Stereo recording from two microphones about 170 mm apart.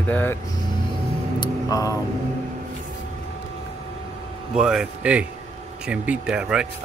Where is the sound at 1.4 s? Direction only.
20° left (ahead or behind).